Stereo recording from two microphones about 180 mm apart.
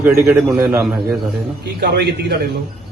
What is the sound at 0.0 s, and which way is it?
Speech, 15° right (ahead or behind).